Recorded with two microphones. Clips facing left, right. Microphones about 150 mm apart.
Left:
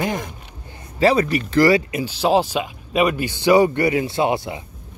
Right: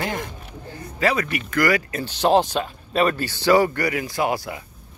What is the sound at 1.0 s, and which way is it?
Speech, 30° left (ahead or behind).